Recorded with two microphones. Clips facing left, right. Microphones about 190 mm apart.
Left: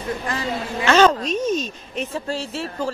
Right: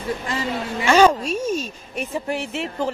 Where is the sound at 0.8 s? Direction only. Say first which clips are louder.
Even; 10° right (ahead or behind).